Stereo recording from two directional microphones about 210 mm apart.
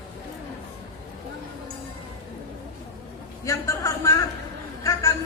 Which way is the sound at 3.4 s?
15° left (ahead or behind).